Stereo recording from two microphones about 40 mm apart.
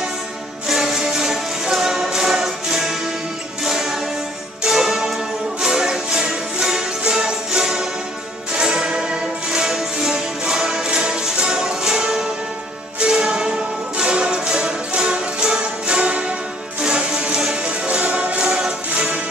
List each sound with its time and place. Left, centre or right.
0.7 s music: centre; by 16.3 s right
16.8 s music: centre